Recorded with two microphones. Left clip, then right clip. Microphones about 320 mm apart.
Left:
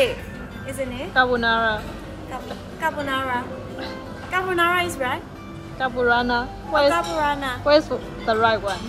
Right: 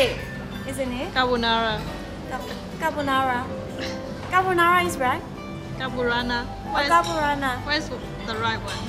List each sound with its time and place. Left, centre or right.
0.7 s a woman's voice: centre
2.8 s a woman's voice: centre